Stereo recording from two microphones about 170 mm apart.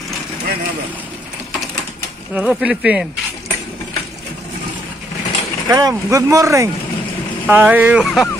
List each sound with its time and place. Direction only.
2.3 s speech: 5° right (ahead or behind)
5.7 s speech: 20° right (ahead or behind); by 8.3 s centre (ahead or behind)